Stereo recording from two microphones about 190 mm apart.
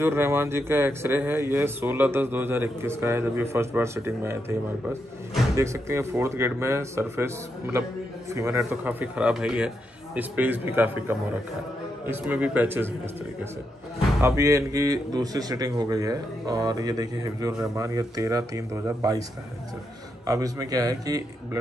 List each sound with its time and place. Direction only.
0.0 s a man's voice: 10° right (ahead or behind)
14.2 s a man's voice: 15° right (ahead or behind)
20.2 s a man's voice: 20° right (ahead or behind)